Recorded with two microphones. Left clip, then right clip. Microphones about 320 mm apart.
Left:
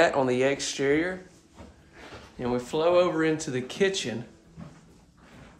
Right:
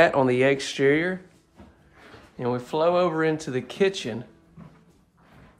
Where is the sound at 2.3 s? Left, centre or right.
Centre.